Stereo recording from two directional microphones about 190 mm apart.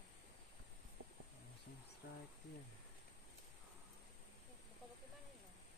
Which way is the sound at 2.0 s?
60° left (ahead or behind).